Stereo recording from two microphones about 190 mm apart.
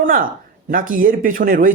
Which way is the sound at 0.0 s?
45° right (ahead or behind).